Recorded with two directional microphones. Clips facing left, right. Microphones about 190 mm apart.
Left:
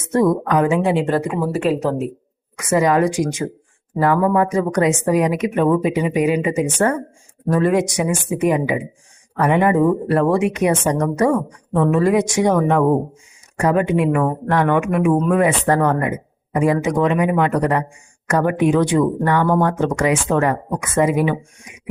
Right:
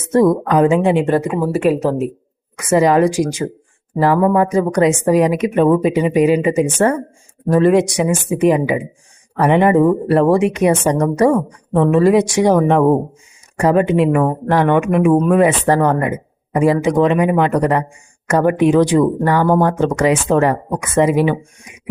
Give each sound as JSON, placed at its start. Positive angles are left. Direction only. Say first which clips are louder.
{"t": 0.1, "sound": "a woman's voice", "louder": "right 3 dB", "side_deg": -30}
{"t": 2.6, "sound": "speech", "louder": "right 3 dB", "side_deg": -30}